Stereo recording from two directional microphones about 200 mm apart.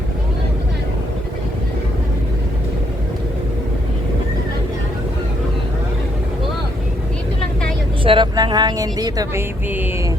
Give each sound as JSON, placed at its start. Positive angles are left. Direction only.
{"t": 8.0, "sound": "speech", "side_deg": -25}